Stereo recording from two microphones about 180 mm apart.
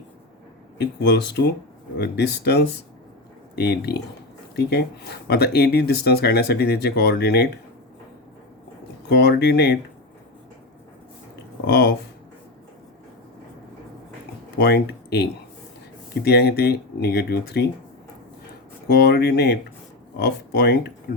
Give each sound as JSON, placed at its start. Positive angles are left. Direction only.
{"t": 0.8, "sound": "speech", "side_deg": 65}
{"t": 9.0, "sound": "speech", "side_deg": 70}
{"t": 11.6, "sound": "speech", "side_deg": 75}
{"t": 14.6, "sound": "speech", "side_deg": 65}
{"t": 18.9, "sound": "speech", "side_deg": 65}